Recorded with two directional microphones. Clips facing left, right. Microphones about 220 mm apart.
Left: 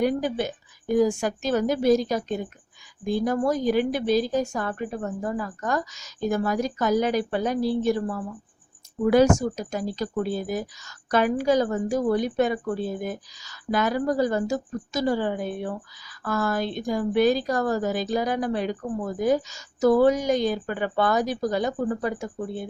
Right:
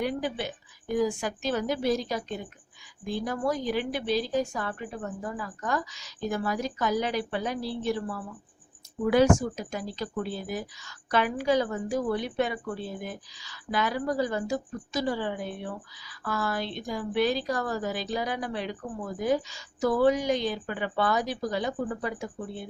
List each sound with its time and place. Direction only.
0.0 s speech: 45° left (ahead or behind)